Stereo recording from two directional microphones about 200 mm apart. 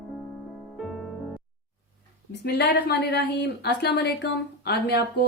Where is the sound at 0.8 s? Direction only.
Centre (ahead or behind).